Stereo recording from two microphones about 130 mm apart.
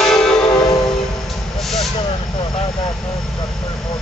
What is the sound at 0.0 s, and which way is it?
Train horn, 5° left (ahead or behind).